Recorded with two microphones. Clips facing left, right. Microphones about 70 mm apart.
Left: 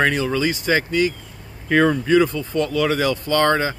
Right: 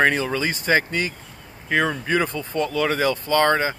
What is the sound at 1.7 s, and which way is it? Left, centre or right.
Speech, centre.